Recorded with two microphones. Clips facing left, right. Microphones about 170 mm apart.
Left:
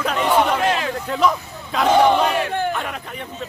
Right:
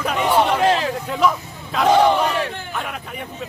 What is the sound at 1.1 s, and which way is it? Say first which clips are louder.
A man's voice: left 1 dB; 5° right (ahead or behind).